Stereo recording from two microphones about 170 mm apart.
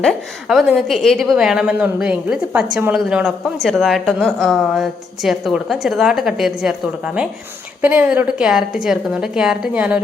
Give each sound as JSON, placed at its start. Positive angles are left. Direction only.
{"t": 0.0, "sound": "a woman's voice", "side_deg": 0}